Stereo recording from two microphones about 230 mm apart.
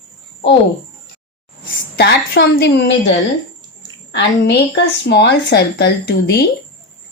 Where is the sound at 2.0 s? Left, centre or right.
Left.